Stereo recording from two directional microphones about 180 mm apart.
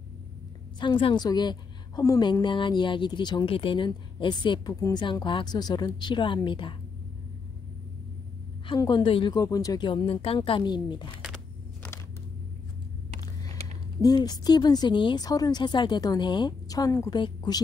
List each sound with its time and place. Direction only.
0.7 s a woman's voice: 25° left (ahead or behind)
8.6 s a woman's voice: 25° left (ahead or behind)
14.0 s a woman's voice: 20° left (ahead or behind)